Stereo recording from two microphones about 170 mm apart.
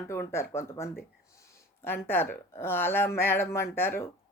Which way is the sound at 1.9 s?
15° left (ahead or behind).